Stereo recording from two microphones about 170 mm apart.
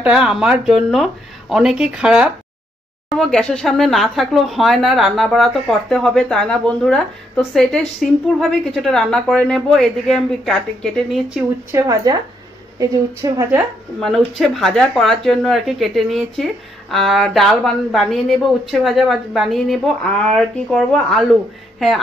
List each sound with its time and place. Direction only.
0.0 s speech: 5° right (ahead or behind)
11.7 s a woman's voice: 20° right (ahead or behind)
13.9 s speech: centre (ahead or behind)